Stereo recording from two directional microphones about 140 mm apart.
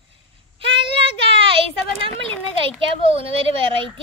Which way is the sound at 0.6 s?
40° right (ahead or behind).